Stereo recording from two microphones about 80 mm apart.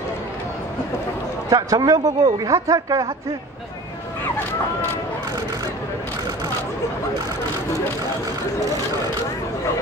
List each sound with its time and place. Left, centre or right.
1.5 s speech: right